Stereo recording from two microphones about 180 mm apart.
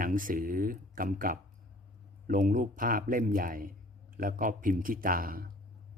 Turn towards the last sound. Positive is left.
turn(degrees=-50)  # may be behind; listen again after turning